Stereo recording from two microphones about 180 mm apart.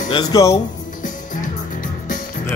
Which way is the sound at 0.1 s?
20° left (ahead or behind).